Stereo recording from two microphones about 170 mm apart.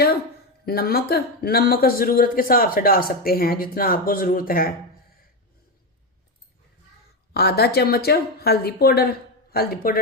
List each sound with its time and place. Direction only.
0.6 s speech: 65° left (ahead or behind)
7.3 s a woman's voice: 70° left (ahead or behind)